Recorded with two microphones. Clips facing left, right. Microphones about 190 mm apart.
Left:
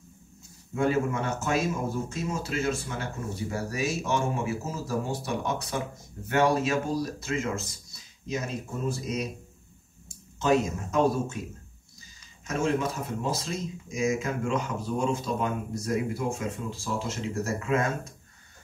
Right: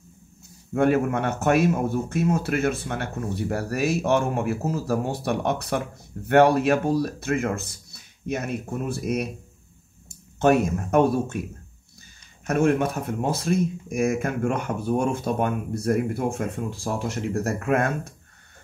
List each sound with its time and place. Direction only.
0.7 s speech: 60° right (ahead or behind)
12.4 s speech: 60° right (ahead or behind)